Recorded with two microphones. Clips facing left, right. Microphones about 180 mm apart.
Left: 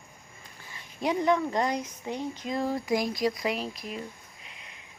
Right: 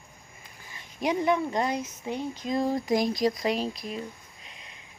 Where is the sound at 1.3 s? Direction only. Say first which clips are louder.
Left 2 dB; 20° right (ahead or behind).